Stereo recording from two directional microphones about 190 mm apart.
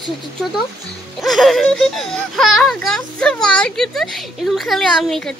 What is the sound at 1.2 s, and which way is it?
Speech, centre (ahead or behind).